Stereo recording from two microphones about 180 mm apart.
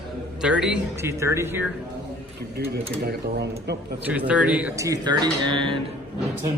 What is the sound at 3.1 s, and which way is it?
Speech, 65° right (ahead or behind).